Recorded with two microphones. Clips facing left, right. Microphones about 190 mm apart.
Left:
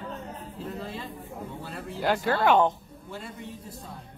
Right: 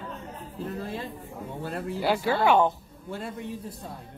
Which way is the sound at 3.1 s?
55° right (ahead or behind).